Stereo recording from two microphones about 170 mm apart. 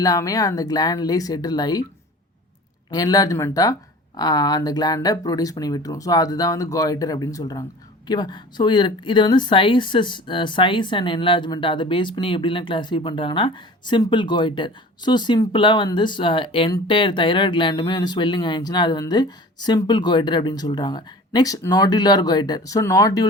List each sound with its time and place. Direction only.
0.0 s speech: 20° left (ahead or behind)
2.9 s speech: 20° left (ahead or behind)